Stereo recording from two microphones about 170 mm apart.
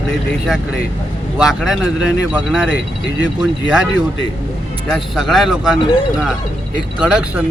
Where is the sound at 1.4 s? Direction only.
5° right (ahead or behind).